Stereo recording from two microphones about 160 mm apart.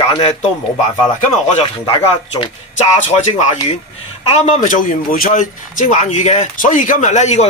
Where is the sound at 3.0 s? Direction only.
45° left (ahead or behind).